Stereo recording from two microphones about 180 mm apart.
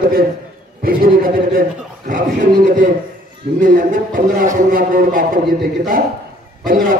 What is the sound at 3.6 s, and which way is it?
A man's voice, 45° right (ahead or behind).